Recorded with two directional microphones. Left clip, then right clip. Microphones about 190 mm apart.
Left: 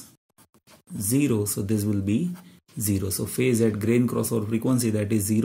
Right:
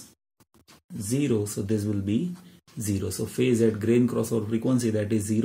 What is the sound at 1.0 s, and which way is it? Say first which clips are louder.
Speech: left 2 dB; 40° left (ahead or behind).